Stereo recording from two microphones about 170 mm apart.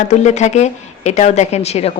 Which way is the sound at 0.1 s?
45° left (ahead or behind).